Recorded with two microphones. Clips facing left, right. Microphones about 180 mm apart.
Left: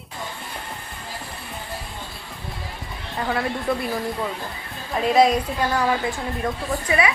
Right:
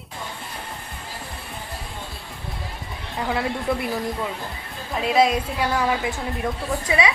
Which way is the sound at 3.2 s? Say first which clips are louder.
Even; 15° right (ahead or behind).